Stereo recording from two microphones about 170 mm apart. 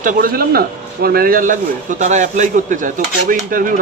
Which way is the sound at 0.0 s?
55° right (ahead or behind).